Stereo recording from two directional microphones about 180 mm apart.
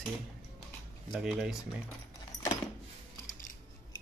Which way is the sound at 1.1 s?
Centre (ahead or behind).